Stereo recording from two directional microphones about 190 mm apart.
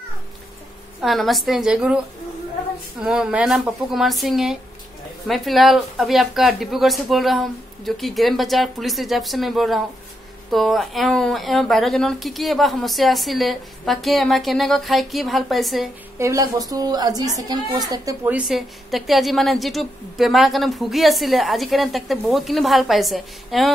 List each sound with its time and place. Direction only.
1.0 s a woman's voice: centre (ahead or behind)
3.0 s a woman's voice: 5° right (ahead or behind)
16.2 s a woman's voice: 15° right (ahead or behind)
18.3 s a woman's voice: centre (ahead or behind)